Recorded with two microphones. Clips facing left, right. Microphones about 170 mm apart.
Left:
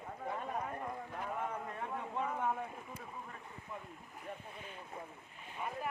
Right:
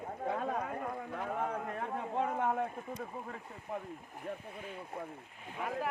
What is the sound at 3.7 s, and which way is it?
Speech, 90° right.